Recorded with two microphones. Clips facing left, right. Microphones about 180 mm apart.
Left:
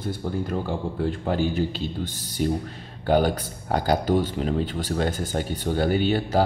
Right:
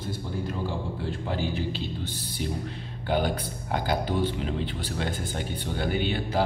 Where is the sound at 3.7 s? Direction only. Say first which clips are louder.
Left 6 dB; 40° left (ahead or behind).